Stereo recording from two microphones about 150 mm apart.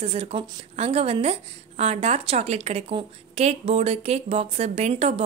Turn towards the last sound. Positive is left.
turn(degrees=-50)  # may be behind; listen again after turning